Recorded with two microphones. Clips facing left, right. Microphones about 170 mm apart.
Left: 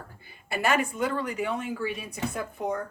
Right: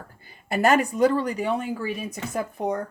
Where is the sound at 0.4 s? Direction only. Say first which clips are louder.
Right 6 dB; 40° right (ahead or behind).